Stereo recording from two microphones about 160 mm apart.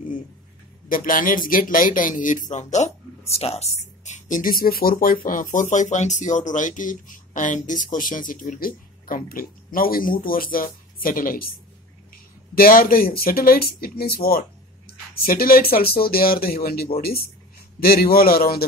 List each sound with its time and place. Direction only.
0.8 s speech: 60° left (ahead or behind)
12.5 s speech: 65° left (ahead or behind)